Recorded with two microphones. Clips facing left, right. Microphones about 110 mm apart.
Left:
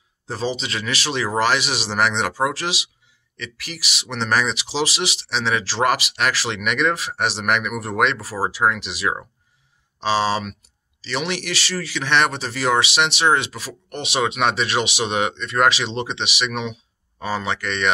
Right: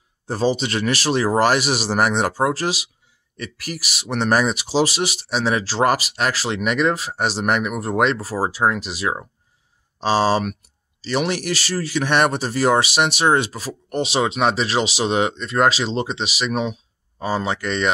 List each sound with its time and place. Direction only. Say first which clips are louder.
0.3 s a man's voice: right 5 dB; 45° right (ahead or behind)
4.1 s a man's voice: right 3 dB; 40° right (ahead or behind)